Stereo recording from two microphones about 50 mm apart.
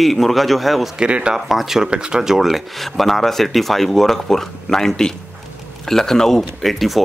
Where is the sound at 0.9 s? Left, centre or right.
Right.